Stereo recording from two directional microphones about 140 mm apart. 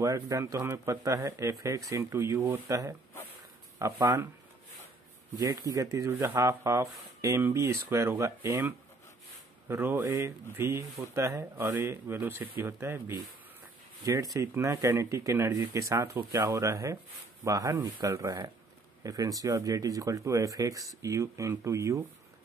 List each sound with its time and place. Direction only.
0.0 s speech: 20° right (ahead or behind)
5.4 s speech: 25° right (ahead or behind)